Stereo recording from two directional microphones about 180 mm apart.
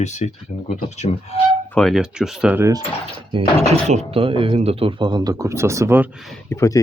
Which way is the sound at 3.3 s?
35° right (ahead or behind).